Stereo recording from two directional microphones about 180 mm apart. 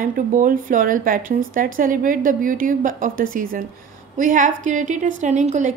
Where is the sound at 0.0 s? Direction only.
50° right (ahead or behind).